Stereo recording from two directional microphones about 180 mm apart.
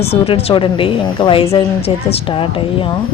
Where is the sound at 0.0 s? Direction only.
35° left (ahead or behind).